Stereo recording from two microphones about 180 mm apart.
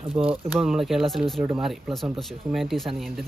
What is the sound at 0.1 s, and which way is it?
Speech, 30° right (ahead or behind).